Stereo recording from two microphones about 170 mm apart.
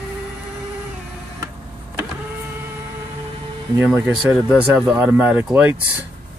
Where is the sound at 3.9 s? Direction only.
5° right (ahead or behind).